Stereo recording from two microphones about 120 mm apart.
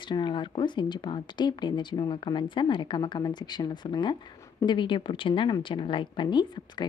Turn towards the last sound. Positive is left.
turn(degrees=35)  # may be behind; listen again after turning